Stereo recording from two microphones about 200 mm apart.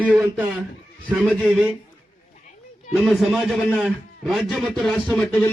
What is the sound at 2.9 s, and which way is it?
A man's voice, centre (ahead or behind).